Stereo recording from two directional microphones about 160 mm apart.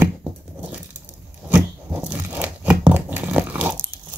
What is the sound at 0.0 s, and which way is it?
Crunch, 15° right (ahead or behind).